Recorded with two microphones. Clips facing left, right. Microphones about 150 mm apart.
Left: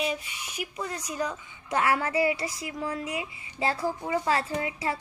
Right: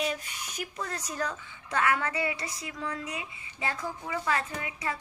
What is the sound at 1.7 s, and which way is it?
Speech, 25° left (ahead or behind).